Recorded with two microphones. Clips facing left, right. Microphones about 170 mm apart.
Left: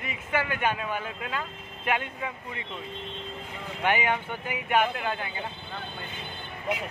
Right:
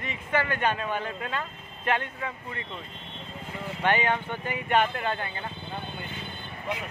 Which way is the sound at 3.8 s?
10° left (ahead or behind).